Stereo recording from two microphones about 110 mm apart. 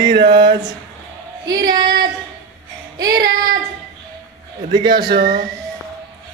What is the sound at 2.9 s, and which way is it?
Child singing, 35° right (ahead or behind).